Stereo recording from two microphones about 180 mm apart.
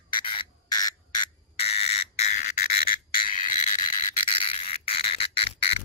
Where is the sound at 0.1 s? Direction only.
30° left (ahead or behind).